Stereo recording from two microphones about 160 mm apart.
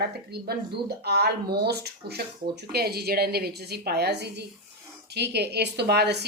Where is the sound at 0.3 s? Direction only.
90° right.